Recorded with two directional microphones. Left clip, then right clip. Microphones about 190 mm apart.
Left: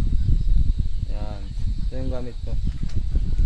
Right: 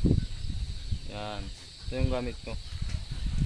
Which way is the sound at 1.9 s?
20° right (ahead or behind).